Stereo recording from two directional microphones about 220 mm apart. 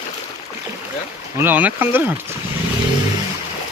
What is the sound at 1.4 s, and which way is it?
Speech, 10° right (ahead or behind).